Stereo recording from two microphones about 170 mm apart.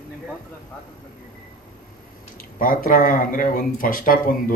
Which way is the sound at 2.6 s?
55° left (ahead or behind).